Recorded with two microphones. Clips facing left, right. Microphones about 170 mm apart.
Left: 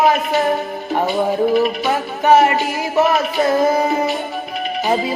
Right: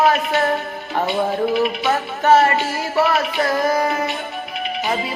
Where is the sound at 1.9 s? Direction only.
15° left (ahead or behind).